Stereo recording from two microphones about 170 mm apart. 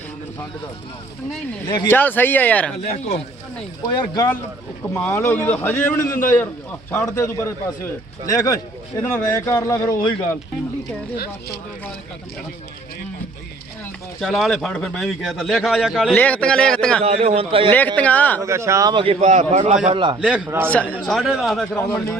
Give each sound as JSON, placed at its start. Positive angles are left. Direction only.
{"t": 1.6, "sound": "speech", "side_deg": 15}
{"t": 3.8, "sound": "speech", "side_deg": 25}
{"t": 4.9, "sound": "speech", "side_deg": 10}
{"t": 14.2, "sound": "speech", "side_deg": 0}
{"t": 16.1, "sound": "speech", "side_deg": 10}
{"t": 17.0, "sound": "a man's voice", "side_deg": -40}
{"t": 17.7, "sound": "speech", "side_deg": 10}
{"t": 18.4, "sound": "speech", "side_deg": -15}
{"t": 19.2, "sound": "a man's voice", "side_deg": -45}
{"t": 19.9, "sound": "speech", "side_deg": -30}
{"t": 20.2, "sound": "a man's voice", "side_deg": -5}
{"t": 20.7, "sound": "speech", "side_deg": 10}
{"t": 20.9, "sound": "speech", "side_deg": -5}
{"t": 21.8, "sound": "speech", "side_deg": 15}